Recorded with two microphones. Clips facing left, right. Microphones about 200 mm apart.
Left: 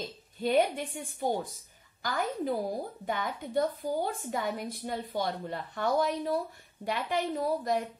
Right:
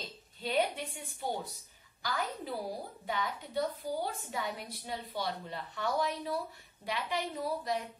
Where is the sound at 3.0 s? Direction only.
50° left (ahead or behind).